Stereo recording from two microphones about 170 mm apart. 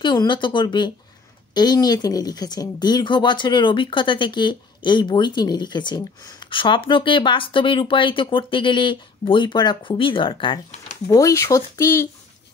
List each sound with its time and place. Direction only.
0.0 s speech: 25° left (ahead or behind)